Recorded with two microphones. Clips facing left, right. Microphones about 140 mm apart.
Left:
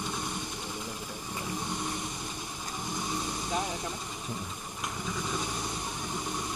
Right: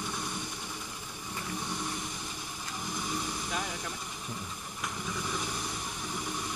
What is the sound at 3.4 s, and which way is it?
Vehicle, 20° left (ahead or behind).